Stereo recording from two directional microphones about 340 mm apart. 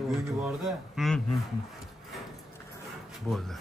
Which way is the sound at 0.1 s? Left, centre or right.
Centre.